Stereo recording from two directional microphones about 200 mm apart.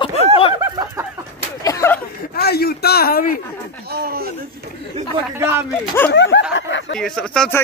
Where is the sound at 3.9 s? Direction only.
50° right (ahead or behind).